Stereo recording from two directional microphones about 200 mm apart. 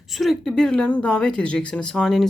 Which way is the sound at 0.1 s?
Centre (ahead or behind).